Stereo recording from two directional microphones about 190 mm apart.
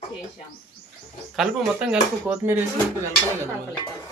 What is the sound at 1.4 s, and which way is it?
Speech, 5° right (ahead or behind).